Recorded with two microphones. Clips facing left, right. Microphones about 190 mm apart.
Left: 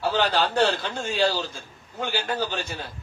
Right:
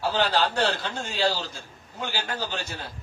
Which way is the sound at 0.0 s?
55° left (ahead or behind).